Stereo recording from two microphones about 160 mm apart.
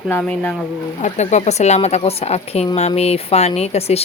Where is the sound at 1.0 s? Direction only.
45° left (ahead or behind).